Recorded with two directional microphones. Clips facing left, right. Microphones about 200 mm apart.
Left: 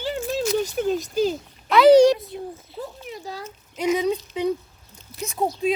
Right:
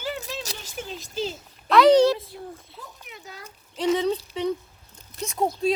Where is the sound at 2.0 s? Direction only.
20° left (ahead or behind).